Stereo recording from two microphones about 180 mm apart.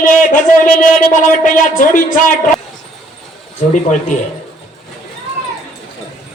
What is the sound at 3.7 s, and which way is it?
Speech, 45° left (ahead or behind).